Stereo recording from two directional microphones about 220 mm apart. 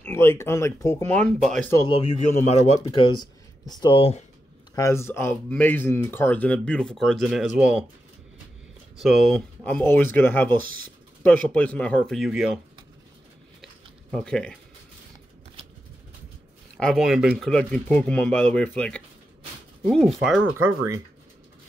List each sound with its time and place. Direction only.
0.0 s speech: 10° left (ahead or behind)
1.8 s speech: 25° left (ahead or behind)
4.7 s speech: 15° left (ahead or behind); by 7.8 s 5° right (ahead or behind)
8.9 s speech: centre (ahead or behind)
14.1 s speech: 5° left (ahead or behind)
16.7 s speech: centre (ahead or behind)